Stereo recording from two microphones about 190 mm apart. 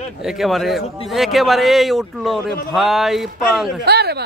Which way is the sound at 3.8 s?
60° right (ahead or behind).